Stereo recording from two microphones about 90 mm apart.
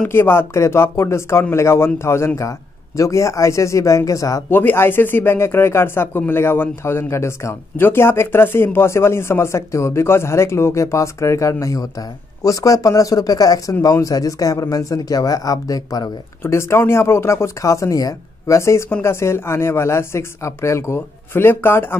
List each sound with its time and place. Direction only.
0.1 s speech: 25° left (ahead or behind)
4.5 s speech: 25° left (ahead or behind); by 16.1 s 45° left (ahead or behind)
16.4 s speech: 30° left (ahead or behind)